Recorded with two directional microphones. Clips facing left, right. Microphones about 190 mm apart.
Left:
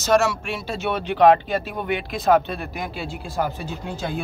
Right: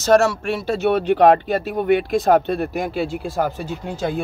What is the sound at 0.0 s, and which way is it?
Speech, 40° right (ahead or behind).